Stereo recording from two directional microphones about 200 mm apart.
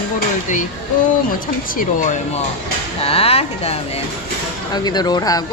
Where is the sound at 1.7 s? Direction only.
40° left (ahead or behind).